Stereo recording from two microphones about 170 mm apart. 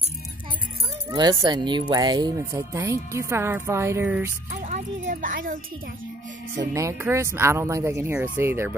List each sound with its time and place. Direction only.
1.1 s speech: 25° right (ahead or behind)
4.5 s speech: 45° right (ahead or behind)
6.7 s speech: 15° right (ahead or behind)